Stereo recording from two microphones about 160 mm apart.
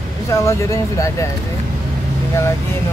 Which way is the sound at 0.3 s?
20° left (ahead or behind).